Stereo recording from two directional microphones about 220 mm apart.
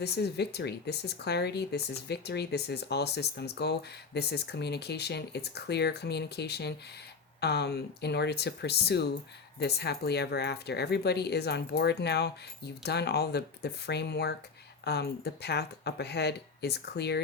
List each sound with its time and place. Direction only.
0.0 s speech: 50° left (ahead or behind)